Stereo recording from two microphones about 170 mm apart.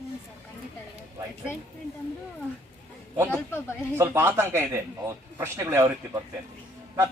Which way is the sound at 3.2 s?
10° left (ahead or behind).